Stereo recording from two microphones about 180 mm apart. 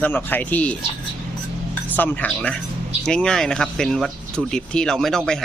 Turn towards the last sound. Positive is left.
turn(degrees=5)  # may be behind; listen again after turning